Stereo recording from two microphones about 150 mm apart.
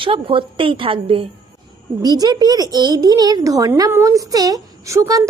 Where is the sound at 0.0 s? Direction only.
35° right (ahead or behind).